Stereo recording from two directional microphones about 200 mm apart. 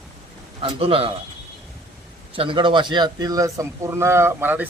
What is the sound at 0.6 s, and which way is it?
Speech, 30° right (ahead or behind).